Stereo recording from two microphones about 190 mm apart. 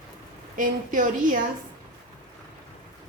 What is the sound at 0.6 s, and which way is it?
Speech, 45° right (ahead or behind).